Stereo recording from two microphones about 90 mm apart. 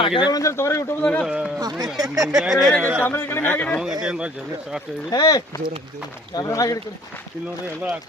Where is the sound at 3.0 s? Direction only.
25° left (ahead or behind).